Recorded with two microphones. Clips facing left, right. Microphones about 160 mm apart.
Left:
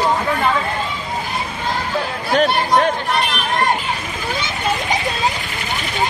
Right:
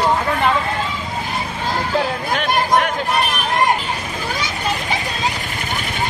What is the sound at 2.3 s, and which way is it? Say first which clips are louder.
Chatter: left 4 dB; 35° left (ahead or behind).